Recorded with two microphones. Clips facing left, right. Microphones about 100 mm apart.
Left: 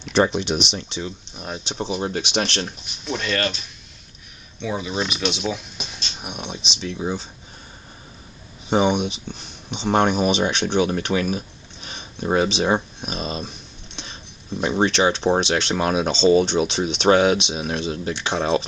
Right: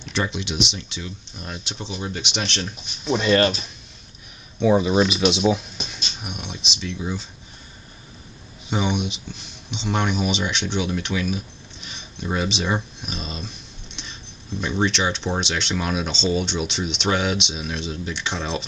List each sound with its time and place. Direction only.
0.1 s speech: 40° left (ahead or behind)
1.3 s speech: 15° left (ahead or behind)
2.0 s speech: 40° left (ahead or behind)
3.1 s speech: 20° right (ahead or behind)
4.6 s speech: 30° right (ahead or behind)
5.0 s speech: 15° right (ahead or behind)
6.2 s speech: 30° left (ahead or behind)
8.6 s speech: 40° left (ahead or behind)
14.7 s speech: 40° left (ahead or behind)